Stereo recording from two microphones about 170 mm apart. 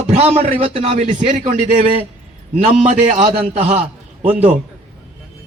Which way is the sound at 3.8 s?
10° right (ahead or behind).